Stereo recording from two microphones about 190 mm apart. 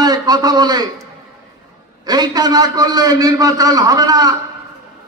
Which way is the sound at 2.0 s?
20° right (ahead or behind).